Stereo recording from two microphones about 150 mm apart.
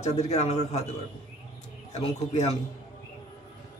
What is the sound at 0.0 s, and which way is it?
Speech, 45° left (ahead or behind).